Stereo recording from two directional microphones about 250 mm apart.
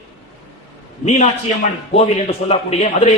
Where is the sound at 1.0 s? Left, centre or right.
Left.